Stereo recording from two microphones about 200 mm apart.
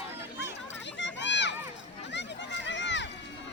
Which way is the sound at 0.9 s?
65° left (ahead or behind).